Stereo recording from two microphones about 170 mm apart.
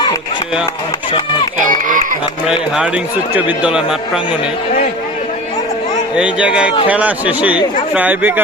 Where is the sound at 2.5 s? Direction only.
5° right (ahead or behind).